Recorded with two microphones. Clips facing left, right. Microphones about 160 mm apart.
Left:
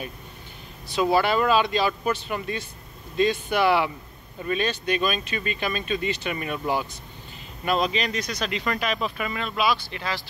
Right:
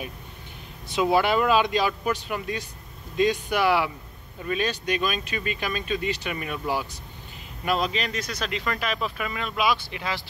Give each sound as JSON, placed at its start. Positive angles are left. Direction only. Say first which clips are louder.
{"t": 1.1, "sound": "speech", "louder": "even", "side_deg": -15}
{"t": 9.7, "sound": "speech", "louder": "even", "side_deg": -15}